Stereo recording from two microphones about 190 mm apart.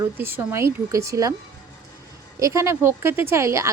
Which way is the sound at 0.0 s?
10° right (ahead or behind).